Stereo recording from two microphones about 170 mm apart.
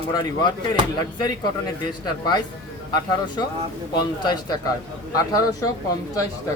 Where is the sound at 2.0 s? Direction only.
25° left (ahead or behind).